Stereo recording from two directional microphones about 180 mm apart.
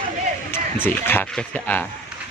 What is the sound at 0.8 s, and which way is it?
A man's voice, 10° left (ahead or behind).